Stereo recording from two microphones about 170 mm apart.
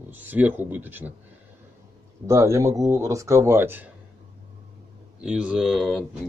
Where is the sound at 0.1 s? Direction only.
10° right (ahead or behind).